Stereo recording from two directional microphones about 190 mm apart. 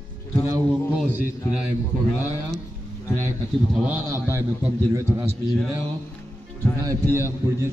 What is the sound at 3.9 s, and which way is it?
A man's voice, 15° right (ahead or behind).